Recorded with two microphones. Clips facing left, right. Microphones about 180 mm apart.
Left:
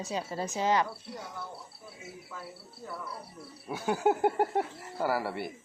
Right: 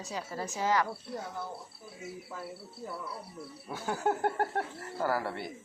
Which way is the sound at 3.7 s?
15° left (ahead or behind).